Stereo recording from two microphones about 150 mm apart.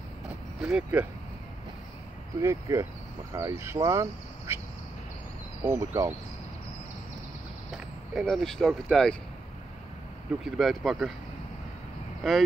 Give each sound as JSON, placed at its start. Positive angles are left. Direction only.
{"t": 0.3, "sound": "vehicle", "side_deg": -5}
{"t": 2.4, "sound": "speech", "side_deg": -20}
{"t": 5.6, "sound": "speech", "side_deg": -20}
{"t": 7.7, "sound": "speech", "side_deg": 0}
{"t": 10.4, "sound": "speech", "side_deg": 0}
{"t": 12.2, "sound": "speech", "side_deg": 0}